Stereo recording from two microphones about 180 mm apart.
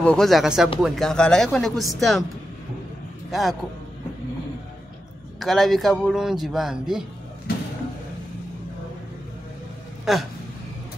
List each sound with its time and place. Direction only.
0.0 s a man's voice: 5° left (ahead or behind)
3.3 s a man's voice: centre (ahead or behind)
5.4 s a man's voice: centre (ahead or behind)
10.1 s a man's voice: centre (ahead or behind)